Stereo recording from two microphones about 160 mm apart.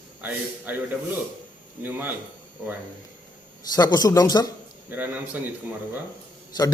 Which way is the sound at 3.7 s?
25° left (ahead or behind).